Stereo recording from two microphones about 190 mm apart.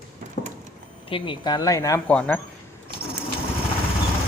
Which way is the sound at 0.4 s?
45° left (ahead or behind).